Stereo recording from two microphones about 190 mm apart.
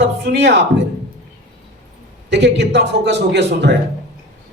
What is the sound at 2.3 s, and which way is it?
Speech, 65° right (ahead or behind).